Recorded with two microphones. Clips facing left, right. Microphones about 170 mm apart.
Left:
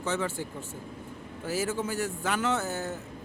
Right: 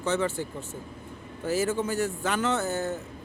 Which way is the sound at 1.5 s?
10° left (ahead or behind).